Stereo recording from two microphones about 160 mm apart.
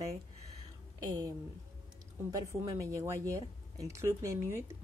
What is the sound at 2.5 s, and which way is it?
Speech, 20° right (ahead or behind).